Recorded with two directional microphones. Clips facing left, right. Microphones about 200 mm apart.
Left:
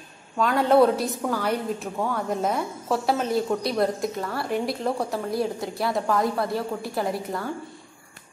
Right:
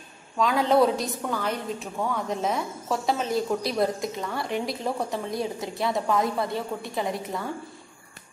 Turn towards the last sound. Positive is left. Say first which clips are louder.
# left 2 dB
turn(degrees=0)  # may be behind; listen again after turning